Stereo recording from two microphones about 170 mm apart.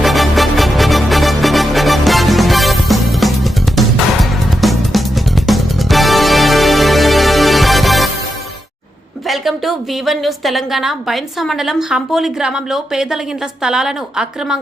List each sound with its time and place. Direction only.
0.0 s music: centre (ahead or behind)
9.2 s a woman's voice: centre (ahead or behind)